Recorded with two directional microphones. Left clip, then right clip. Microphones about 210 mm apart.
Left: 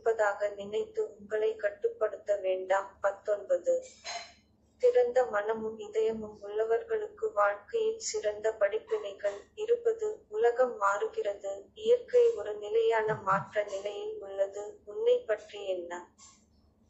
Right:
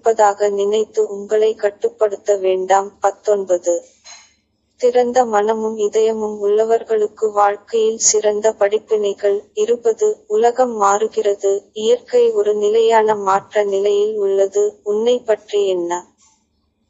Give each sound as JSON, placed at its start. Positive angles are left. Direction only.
{"t": 0.1, "sound": "speech", "side_deg": -60}
{"t": 4.7, "sound": "speech", "side_deg": -60}